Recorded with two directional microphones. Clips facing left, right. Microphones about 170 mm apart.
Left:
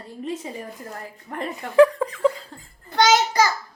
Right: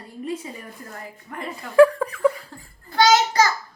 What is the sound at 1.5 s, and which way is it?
A child's voice, 15° left (ahead or behind).